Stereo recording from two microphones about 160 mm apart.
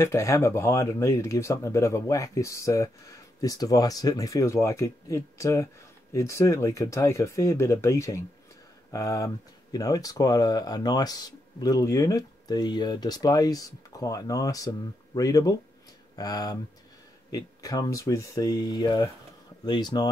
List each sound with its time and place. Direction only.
0.0 s speech: 20° left (ahead or behind)